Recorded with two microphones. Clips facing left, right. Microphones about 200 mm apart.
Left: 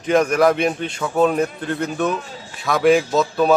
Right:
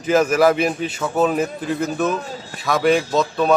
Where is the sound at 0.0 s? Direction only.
5° right (ahead or behind).